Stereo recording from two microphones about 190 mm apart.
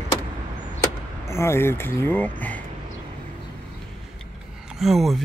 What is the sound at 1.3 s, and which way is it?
Speech, 15° left (ahead or behind).